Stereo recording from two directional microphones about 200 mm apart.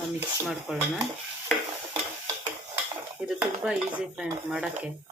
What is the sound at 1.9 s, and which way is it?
Stir, 25° right (ahead or behind).